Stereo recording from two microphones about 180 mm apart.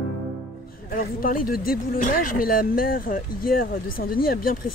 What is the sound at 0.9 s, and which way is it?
Speech, 55° left (ahead or behind).